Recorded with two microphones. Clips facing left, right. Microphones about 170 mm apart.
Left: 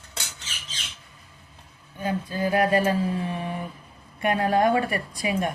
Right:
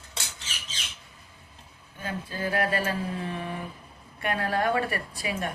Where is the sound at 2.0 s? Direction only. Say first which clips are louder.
Left 6 dB; 15° left (ahead or behind).